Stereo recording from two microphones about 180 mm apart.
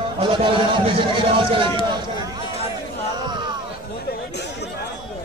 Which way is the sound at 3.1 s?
25° right (ahead or behind).